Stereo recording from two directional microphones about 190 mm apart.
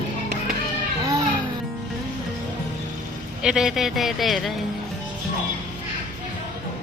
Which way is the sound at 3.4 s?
5° right (ahead or behind).